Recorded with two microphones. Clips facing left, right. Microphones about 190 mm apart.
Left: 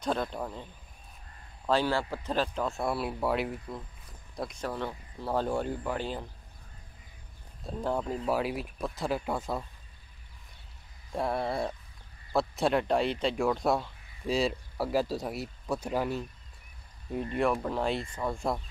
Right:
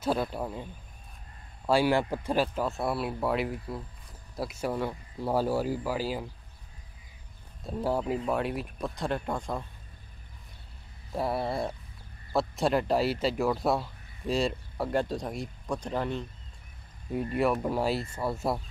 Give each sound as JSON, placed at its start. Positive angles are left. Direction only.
{"t": 0.0, "sound": "speech", "side_deg": -5}
{"t": 1.7, "sound": "speech", "side_deg": -15}
{"t": 7.6, "sound": "speech", "side_deg": -5}
{"t": 11.1, "sound": "speech", "side_deg": -5}
{"t": 17.1, "sound": "speech", "side_deg": -5}